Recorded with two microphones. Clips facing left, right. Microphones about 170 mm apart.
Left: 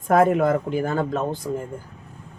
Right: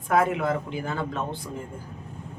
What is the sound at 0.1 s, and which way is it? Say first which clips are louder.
Speech: left 6 dB; 45° left (ahead or behind).